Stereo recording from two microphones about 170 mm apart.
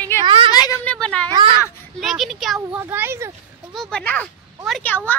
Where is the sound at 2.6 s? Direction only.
15° right (ahead or behind).